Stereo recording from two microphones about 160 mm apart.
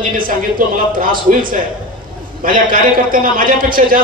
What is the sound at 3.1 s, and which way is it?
Speech, 60° right (ahead or behind).